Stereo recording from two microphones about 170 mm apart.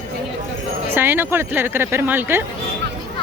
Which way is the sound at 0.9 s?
10° right (ahead or behind).